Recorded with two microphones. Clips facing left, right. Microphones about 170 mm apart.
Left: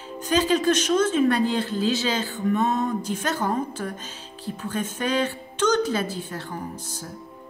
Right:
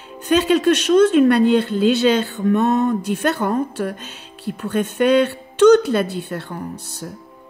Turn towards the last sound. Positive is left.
turn(degrees=-65)  # may be behind; listen again after turning